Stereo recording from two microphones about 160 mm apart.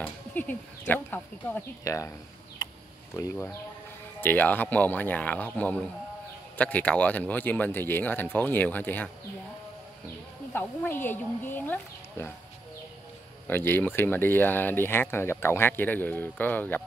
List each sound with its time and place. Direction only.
0.0 s speech: 10° left (ahead or behind)
2.6 s a sound: 20° left (ahead or behind)
4.2 s speech: 10° left (ahead or behind)
10.5 s speech: 15° left (ahead or behind)
13.5 s speech: 15° left (ahead or behind)